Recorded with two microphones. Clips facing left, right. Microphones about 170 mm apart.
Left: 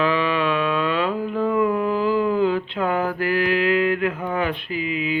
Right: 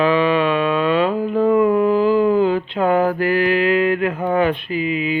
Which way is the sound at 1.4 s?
35° right (ahead or behind).